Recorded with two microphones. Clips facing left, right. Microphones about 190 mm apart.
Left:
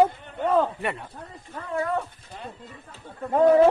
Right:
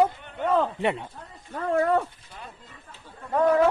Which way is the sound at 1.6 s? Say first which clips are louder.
Right 5 dB; 55° right (ahead or behind).